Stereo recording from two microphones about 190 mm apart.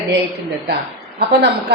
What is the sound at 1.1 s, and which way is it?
Speech, 60° right (ahead or behind).